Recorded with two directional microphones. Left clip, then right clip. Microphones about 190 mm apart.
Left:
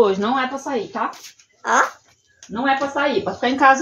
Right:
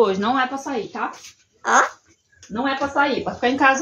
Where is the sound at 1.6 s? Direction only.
20° right (ahead or behind).